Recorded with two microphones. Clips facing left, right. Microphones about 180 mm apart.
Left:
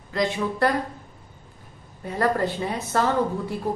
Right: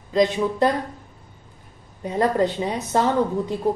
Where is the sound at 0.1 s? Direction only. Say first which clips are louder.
Right 5 dB; 20° right (ahead or behind).